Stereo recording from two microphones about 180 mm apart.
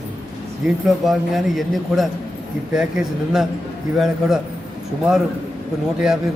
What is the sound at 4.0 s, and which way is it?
Speech, centre (ahead or behind).